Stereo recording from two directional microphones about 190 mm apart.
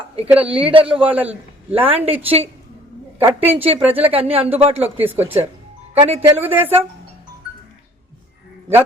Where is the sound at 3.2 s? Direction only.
10° right (ahead or behind).